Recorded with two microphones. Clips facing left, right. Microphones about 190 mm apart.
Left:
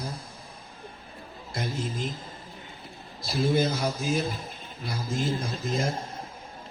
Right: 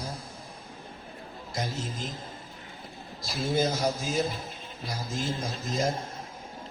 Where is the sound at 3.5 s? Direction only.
60° left (ahead or behind).